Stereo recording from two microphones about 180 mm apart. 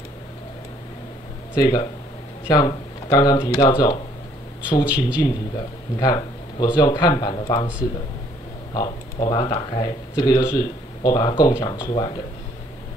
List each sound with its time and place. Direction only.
1.5 s speech: 20° left (ahead or behind)
4.8 s a man's voice: 5° right (ahead or behind)
5.9 s speech: 20° left (ahead or behind)
8.7 s speech: 25° left (ahead or behind)